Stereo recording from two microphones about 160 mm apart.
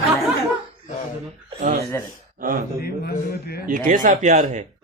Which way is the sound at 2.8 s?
75° left (ahead or behind).